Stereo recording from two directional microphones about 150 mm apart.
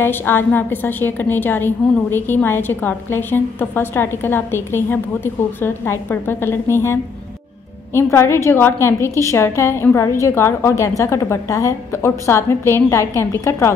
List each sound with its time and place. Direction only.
0.0 s a woman's voice: 15° left (ahead or behind)